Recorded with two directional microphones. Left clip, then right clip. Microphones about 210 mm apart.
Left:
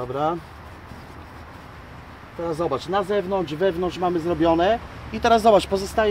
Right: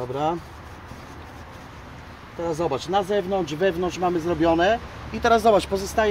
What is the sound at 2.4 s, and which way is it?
Speech, 15° left (ahead or behind).